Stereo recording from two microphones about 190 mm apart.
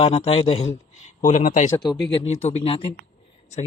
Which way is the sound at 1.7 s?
20° left (ahead or behind).